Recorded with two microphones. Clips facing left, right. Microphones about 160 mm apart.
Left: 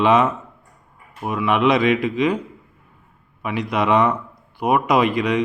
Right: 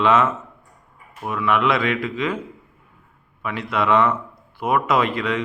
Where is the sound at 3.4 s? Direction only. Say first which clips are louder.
Left 2 dB; 15° left (ahead or behind).